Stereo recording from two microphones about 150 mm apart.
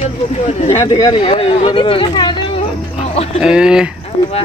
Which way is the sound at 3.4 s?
5° right (ahead or behind).